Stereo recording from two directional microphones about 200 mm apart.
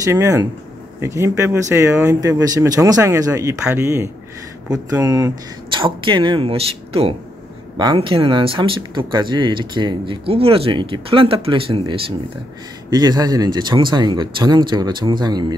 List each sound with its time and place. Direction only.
0.0 s speech: 15° right (ahead or behind)